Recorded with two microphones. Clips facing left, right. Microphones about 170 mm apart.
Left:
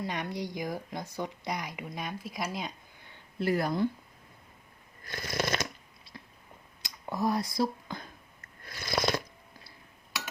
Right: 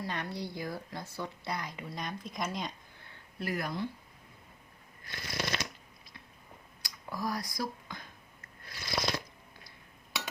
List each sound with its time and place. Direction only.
0.0 s speech: 15° left (ahead or behind)
3.4 s speech: 30° left (ahead or behind)
5.0 s shuffling cards: 45° left (ahead or behind)
6.8 s speech: 25° left (ahead or behind)
8.7 s a sound: 50° left (ahead or behind)